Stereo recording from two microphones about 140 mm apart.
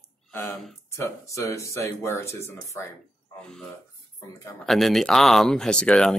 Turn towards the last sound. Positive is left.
turn(degrees=5)  # may be behind; listen again after turning